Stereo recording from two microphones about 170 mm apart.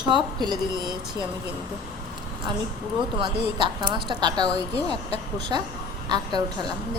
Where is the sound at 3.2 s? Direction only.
30° right (ahead or behind).